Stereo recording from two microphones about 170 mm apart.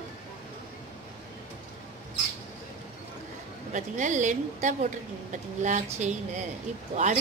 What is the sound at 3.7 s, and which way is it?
A woman's voice, 45° right (ahead or behind).